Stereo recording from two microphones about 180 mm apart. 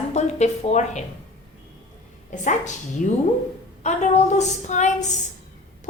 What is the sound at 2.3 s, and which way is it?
A woman's voice, 45° left (ahead or behind).